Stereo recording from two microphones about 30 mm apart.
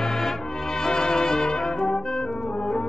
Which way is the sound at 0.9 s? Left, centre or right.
Left.